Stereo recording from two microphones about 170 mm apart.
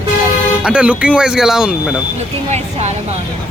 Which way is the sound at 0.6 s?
5° right (ahead or behind).